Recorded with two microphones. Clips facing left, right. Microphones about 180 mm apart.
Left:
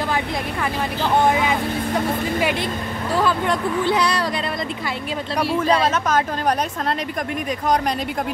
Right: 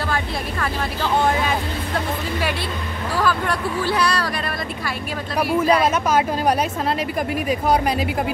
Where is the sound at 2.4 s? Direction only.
20° left (ahead or behind).